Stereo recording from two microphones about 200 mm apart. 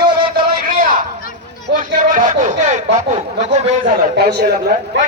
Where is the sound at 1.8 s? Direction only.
40° right (ahead or behind).